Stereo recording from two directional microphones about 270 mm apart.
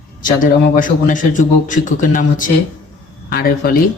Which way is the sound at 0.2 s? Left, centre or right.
Left.